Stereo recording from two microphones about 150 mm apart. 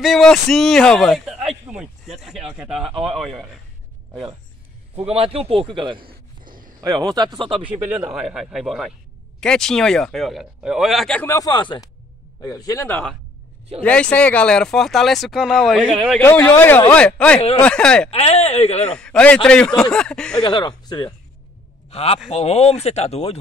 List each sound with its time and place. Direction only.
0.0 s a man's voice: centre (ahead or behind)
5.0 s a man's voice: 40° right (ahead or behind)
7.6 s speech: 10° right (ahead or behind)
11.2 s speech: 25° left (ahead or behind); by 16.0 s 5° right (ahead or behind)
16.2 s speech: 15° left (ahead or behind)
18.1 s speech: 45° left (ahead or behind)
18.9 s speech: 5° left (ahead or behind)
20.3 s speech: 30° left (ahead or behind)
21.9 s speech: 45° left (ahead or behind)